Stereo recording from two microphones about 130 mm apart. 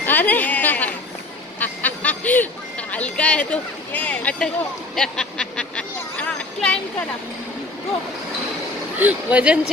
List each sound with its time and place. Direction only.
0.0 s a woman's voice: 15° left (ahead or behind)
4.9 s a sound: 5° left (ahead or behind)
9.0 s speech: 10° right (ahead or behind)